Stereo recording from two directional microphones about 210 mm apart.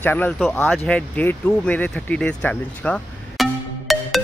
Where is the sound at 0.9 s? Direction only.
5° left (ahead or behind).